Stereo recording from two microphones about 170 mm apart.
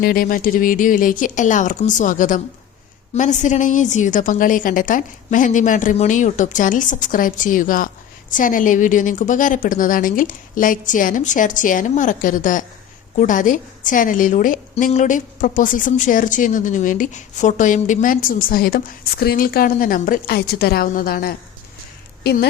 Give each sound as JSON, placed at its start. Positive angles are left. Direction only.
{"t": 0.0, "sound": "a woman's voice", "side_deg": 60}